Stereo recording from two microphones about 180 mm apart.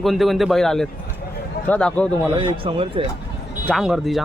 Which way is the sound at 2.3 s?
25° right (ahead or behind).